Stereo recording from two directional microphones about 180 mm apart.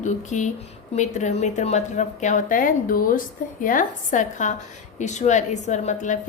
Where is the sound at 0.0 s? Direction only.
45° left (ahead or behind).